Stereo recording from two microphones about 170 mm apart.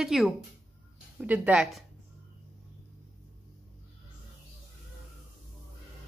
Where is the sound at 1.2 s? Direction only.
10° right (ahead or behind).